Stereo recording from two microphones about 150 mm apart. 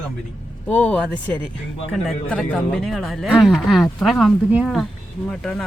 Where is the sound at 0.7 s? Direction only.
10° left (ahead or behind).